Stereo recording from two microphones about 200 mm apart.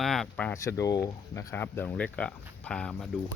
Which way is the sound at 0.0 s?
Centre (ahead or behind).